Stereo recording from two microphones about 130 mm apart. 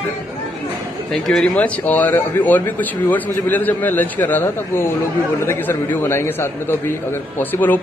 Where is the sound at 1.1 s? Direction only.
5° left (ahead or behind).